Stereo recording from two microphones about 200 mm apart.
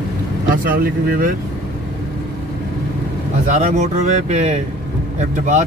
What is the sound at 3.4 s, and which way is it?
Speech, 35° right (ahead or behind).